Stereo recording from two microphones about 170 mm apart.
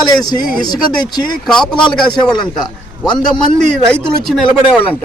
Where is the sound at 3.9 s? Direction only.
Centre (ahead or behind).